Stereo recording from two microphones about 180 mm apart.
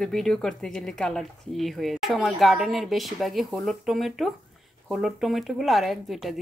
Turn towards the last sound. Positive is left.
turn(degrees=0)  # may be behind; listen again after turning